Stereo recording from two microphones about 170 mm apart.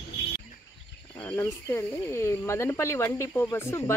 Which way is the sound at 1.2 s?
10° left (ahead or behind).